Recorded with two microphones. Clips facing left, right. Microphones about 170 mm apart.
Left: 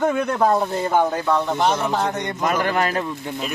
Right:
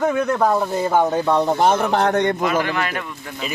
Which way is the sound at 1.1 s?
25° right (ahead or behind).